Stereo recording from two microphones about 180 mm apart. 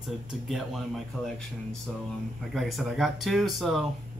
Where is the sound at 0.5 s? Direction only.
Centre (ahead or behind).